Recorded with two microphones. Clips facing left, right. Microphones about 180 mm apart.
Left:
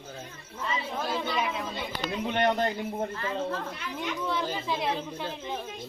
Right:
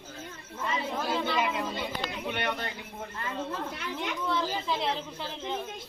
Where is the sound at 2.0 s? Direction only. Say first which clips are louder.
Left 10 dB; 45° left (ahead or behind).